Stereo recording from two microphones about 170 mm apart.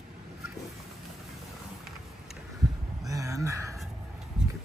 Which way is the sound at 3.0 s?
20° right (ahead or behind).